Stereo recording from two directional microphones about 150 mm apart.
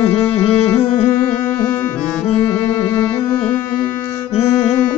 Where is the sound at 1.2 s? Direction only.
15° left (ahead or behind).